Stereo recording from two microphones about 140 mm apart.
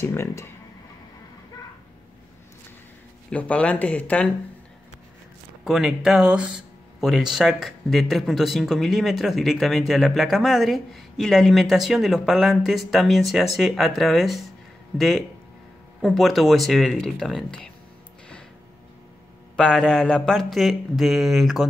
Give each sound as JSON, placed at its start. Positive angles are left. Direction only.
{"t": 0.0, "sound": "speech", "side_deg": 20}
{"t": 3.3, "sound": "speech", "side_deg": 10}
{"t": 5.6, "sound": "speech", "side_deg": 0}
{"t": 19.5, "sound": "speech", "side_deg": 5}